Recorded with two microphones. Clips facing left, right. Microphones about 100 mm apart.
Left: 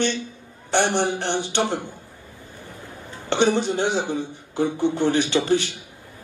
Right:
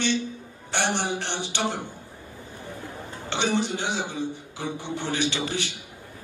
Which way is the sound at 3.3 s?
50° left (ahead or behind).